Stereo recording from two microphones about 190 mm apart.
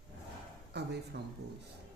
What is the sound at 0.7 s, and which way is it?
Speech, 60° right (ahead or behind).